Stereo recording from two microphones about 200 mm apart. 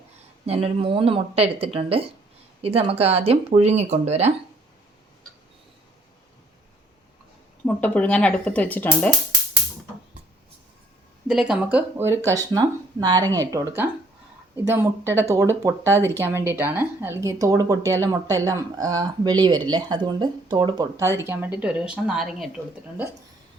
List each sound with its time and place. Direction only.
0.4 s speech: 30° right (ahead or behind)
7.6 s speech: 5° left (ahead or behind)
11.3 s speech: 5° right (ahead or behind)